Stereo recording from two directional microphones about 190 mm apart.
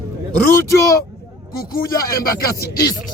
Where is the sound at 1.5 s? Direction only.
50° left (ahead or behind).